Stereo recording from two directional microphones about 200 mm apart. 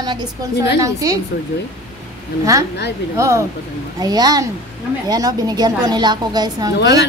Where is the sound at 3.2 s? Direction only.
15° right (ahead or behind).